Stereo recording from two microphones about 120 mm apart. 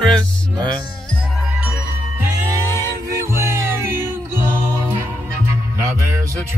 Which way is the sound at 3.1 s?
25° right (ahead or behind).